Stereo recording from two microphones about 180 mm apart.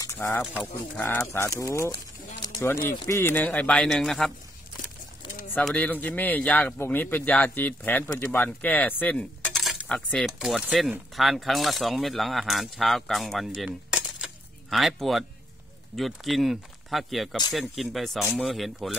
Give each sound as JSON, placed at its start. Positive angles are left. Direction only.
{"t": 0.2, "sound": "speech", "side_deg": 10}
{"t": 1.6, "sound": "speech", "side_deg": 20}
{"t": 2.4, "sound": "a sound", "side_deg": 15}
{"t": 3.1, "sound": "speech", "side_deg": 15}
{"t": 5.5, "sound": "speech", "side_deg": 5}